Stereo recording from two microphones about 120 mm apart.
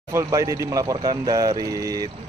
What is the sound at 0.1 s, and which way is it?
Speech, 25° right (ahead or behind).